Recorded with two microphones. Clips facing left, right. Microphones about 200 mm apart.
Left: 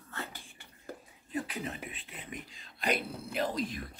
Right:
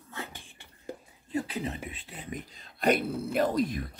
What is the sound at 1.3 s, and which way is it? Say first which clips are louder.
Speech: right 4 dB; 30° right (ahead or behind).